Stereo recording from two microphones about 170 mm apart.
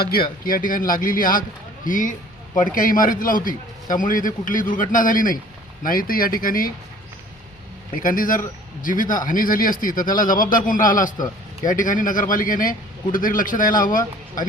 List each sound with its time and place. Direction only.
0.0 s a man's voice: 60° left (ahead or behind)
7.9 s a man's voice: 50° left (ahead or behind)